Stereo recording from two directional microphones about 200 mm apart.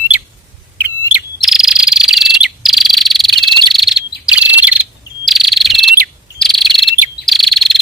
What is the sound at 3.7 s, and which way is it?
Chirp, centre (ahead or behind).